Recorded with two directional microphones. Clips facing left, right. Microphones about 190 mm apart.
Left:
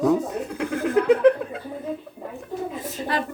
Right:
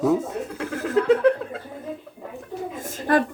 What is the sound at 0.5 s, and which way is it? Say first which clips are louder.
Chuckle: left 2 dB; 15° left (ahead or behind).